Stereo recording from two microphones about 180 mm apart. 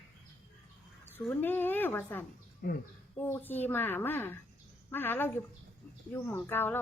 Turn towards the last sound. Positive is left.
turn(degrees=10)  # may be behind; listen again after turning